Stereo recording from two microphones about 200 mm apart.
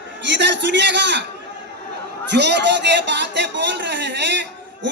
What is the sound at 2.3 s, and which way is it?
A man's voice, 60° right (ahead or behind).